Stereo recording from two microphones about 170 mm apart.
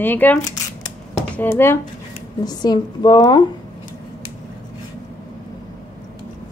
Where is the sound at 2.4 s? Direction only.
25° left (ahead or behind).